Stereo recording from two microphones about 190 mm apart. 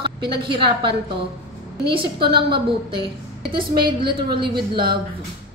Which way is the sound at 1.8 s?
30° right (ahead or behind).